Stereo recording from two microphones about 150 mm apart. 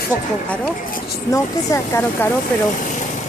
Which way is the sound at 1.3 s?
20° left (ahead or behind).